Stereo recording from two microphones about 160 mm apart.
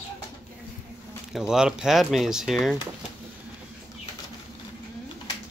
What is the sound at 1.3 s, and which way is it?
Speech, 5° right (ahead or behind).